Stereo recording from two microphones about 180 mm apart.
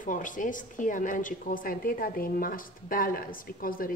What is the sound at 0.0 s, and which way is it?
A woman's voice, 45° left (ahead or behind).